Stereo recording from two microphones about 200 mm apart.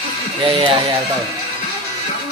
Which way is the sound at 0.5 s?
25° right (ahead or behind).